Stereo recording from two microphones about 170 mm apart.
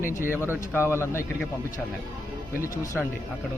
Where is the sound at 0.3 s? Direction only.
15° right (ahead or behind).